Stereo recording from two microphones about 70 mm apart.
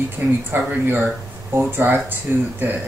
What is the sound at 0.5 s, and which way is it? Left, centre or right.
Speech, right.